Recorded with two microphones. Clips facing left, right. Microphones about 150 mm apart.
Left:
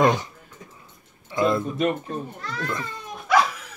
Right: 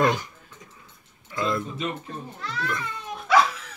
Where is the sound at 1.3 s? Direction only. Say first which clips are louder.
Left 5 dB; 25° left (ahead or behind).